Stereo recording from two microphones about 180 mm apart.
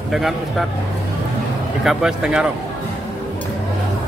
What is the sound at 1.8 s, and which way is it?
Speech, 5° right (ahead or behind).